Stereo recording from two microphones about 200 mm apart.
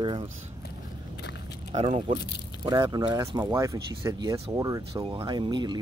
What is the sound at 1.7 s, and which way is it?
Speech, 30° right (ahead or behind).